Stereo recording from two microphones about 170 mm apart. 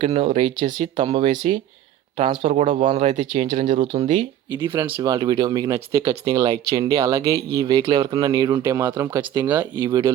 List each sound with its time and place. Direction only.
0.0 s speech: 30° right (ahead or behind)
4.7 s speech: 15° right (ahead or behind)